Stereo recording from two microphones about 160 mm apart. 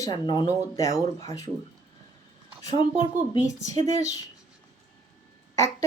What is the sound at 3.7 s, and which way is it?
Speech, 45° right (ahead or behind).